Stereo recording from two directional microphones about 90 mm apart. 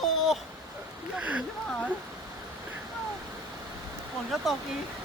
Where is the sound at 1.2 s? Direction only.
15° right (ahead or behind).